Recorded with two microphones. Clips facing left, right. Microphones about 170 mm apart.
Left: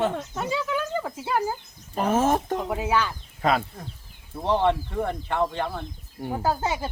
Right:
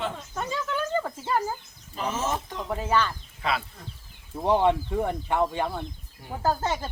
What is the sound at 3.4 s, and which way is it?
Speech, 45° left (ahead or behind).